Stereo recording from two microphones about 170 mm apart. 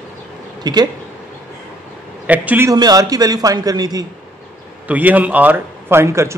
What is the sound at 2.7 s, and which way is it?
A man's voice, 20° right (ahead or behind).